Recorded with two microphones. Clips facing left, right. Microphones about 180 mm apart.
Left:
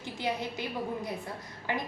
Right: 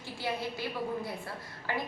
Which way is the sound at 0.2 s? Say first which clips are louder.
Left 1 dB; 20° left (ahead or behind).